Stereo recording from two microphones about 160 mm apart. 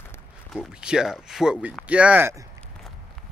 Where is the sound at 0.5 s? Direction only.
5° right (ahead or behind).